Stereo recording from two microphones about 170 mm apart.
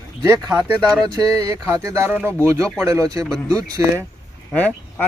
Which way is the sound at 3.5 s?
20° right (ahead or behind).